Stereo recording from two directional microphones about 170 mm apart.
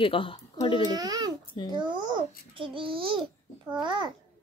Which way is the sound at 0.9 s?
25° right (ahead or behind).